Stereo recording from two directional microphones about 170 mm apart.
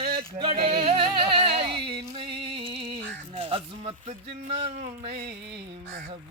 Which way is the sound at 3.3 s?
30° right (ahead or behind).